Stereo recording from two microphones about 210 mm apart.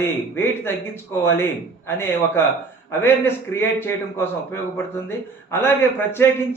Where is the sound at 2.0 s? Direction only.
10° left (ahead or behind).